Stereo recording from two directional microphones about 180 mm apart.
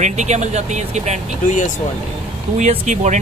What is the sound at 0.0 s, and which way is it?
Speech, 40° right (ahead or behind).